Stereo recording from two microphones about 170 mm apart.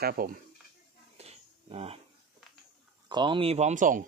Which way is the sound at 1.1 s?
40° right (ahead or behind).